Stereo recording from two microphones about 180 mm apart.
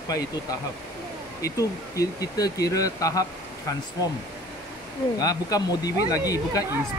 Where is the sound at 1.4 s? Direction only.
20° left (ahead or behind).